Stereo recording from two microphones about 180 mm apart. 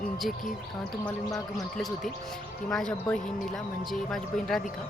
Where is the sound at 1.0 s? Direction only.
20° left (ahead or behind).